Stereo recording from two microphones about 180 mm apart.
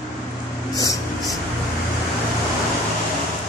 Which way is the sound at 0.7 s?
20° left (ahead or behind).